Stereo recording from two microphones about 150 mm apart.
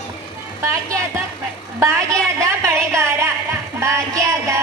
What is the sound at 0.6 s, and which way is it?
Music, 20° right (ahead or behind).